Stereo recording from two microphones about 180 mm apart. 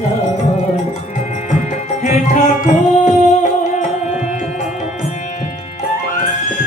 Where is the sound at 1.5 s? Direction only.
40° left (ahead or behind).